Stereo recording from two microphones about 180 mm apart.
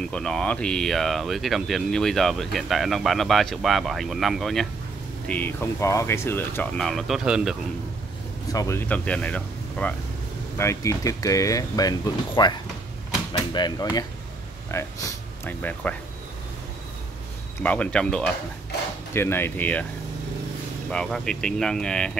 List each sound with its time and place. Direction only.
0.1 s speech: 5° left (ahead or behind)
5.3 s speech: 10° left (ahead or behind)
8.5 s speech: 15° left (ahead or behind)
15.4 s speech: 10° left (ahead or behind)
17.6 s speech: 10° left (ahead or behind)
20.9 s speech: 5° left (ahead or behind)